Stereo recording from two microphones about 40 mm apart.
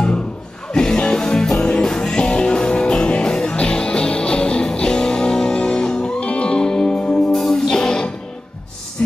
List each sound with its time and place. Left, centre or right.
0.7 s music: centre
6.6 s music: centre
7.3 s music: centre
7.7 s music: centre